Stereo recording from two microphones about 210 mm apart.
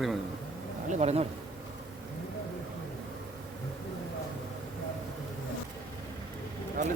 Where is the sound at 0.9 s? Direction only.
30° right (ahead or behind).